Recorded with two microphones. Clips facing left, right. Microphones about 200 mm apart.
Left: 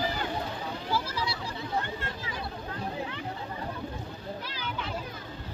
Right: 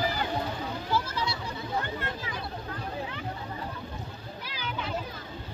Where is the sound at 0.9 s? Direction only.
30° left (ahead or behind).